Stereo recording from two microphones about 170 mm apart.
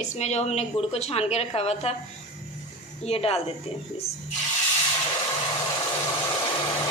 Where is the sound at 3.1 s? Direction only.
35° left (ahead or behind).